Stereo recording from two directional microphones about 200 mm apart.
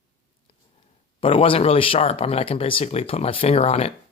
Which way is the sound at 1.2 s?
25° left (ahead or behind).